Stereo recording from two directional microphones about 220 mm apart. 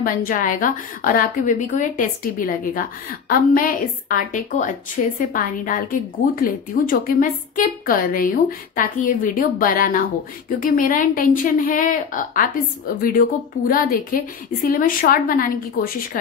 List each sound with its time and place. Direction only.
0.0 s a woman's voice: 40° left (ahead or behind)